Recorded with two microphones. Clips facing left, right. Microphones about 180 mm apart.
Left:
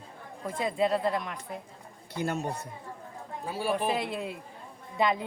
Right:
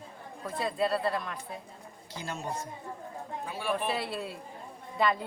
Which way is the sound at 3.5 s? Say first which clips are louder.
Left 3 dB; 35° left (ahead or behind).